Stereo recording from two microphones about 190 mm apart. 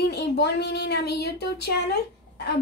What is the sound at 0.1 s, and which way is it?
Speech, 60° left (ahead or behind).